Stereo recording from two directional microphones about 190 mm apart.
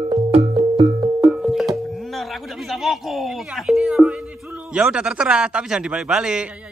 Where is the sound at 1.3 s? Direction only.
Centre (ahead or behind).